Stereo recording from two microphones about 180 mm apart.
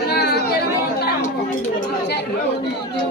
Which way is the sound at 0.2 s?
65° left (ahead or behind).